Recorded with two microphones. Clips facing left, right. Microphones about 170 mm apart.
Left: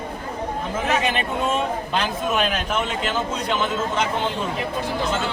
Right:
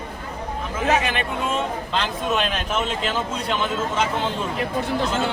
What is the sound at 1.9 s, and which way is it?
A man's voice, 10° left (ahead or behind).